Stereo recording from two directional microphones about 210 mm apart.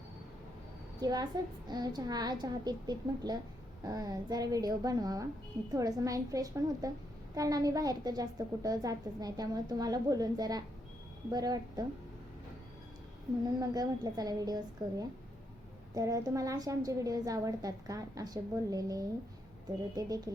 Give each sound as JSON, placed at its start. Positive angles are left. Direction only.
{"t": 1.0, "sound": "a woman's voice", "side_deg": -20}
{"t": 13.6, "sound": "a woman's voice", "side_deg": -20}